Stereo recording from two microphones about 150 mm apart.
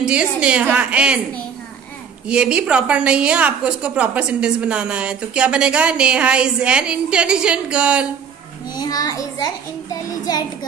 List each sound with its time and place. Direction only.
0.0 s a woman's voice: 5° right (ahead or behind)
2.2 s a woman's voice: 5° right (ahead or behind)
8.7 s a child's voice: 25° left (ahead or behind)